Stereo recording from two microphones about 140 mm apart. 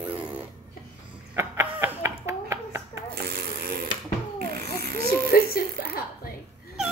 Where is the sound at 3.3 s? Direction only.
90° right.